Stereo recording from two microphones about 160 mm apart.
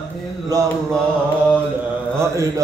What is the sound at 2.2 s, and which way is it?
Mantra, 20° right (ahead or behind).